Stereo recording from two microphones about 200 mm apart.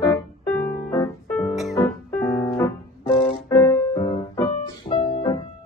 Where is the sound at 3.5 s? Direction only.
15° left (ahead or behind).